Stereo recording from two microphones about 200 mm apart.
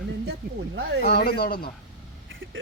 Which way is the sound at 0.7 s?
65° right (ahead or behind).